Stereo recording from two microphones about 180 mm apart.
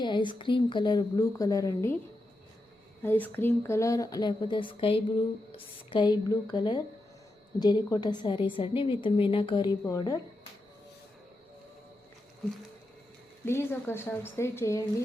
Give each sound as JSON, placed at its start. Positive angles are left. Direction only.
{"t": 0.0, "sound": "speech", "side_deg": 25}
{"t": 3.0, "sound": "speech", "side_deg": 10}
{"t": 13.4, "sound": "speech", "side_deg": 15}